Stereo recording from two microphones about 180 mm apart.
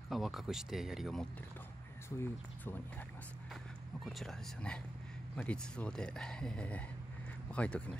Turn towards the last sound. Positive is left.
turn(degrees=5)  # may be behind; listen again after turning